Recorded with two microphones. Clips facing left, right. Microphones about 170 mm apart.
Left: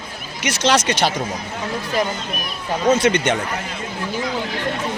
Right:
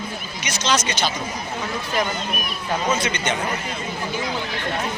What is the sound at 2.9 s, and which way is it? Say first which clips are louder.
Speech: left 8 dB; 70° left (ahead or behind).